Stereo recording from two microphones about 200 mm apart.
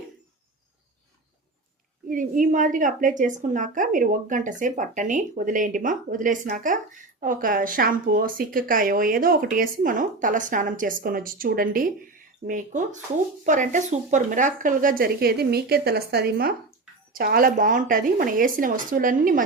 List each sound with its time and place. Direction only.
2.0 s a woman's voice: 40° right (ahead or behind)